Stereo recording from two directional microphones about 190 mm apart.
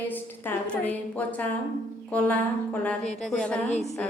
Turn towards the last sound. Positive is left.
turn(degrees=35)  # may be behind; listen again after turning